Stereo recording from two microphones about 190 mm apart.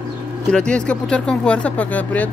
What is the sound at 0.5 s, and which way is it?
Speech, 5° left (ahead or behind).